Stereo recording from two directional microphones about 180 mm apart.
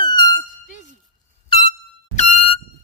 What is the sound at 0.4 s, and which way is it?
Music, 45° left (ahead or behind).